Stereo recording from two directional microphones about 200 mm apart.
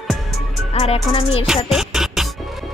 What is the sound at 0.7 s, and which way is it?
Music, 30° left (ahead or behind).